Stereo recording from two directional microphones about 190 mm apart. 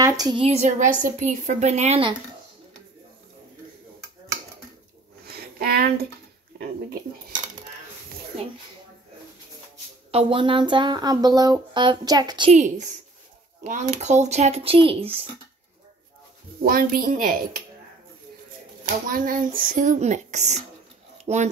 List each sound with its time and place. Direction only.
0.0 s a woman's voice: 20° right (ahead or behind)
5.6 s speech: 55° right (ahead or behind)
10.1 s speech: 25° right (ahead or behind)
12.5 s a woman's voice: 40° right (ahead or behind)
16.6 s speech: 50° right (ahead or behind)
19.1 s a woman's voice: 45° right (ahead or behind)